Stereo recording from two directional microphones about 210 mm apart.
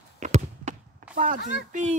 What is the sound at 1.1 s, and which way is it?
Speech, 40° right (ahead or behind).